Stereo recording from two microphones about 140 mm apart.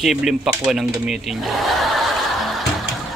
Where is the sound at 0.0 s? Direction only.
5° right (ahead or behind).